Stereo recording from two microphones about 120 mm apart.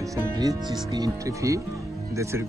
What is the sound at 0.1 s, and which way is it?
Speech, 30° right (ahead or behind).